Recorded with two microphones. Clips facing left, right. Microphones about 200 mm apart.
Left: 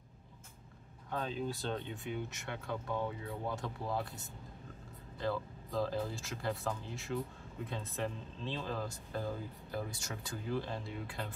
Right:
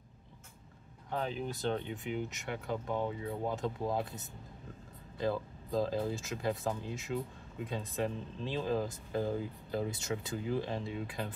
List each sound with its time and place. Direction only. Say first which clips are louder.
1.1 s speech: right 1 dB; 15° right (ahead or behind)